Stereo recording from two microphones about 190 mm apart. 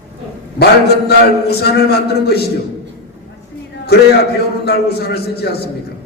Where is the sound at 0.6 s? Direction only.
60° left (ahead or behind).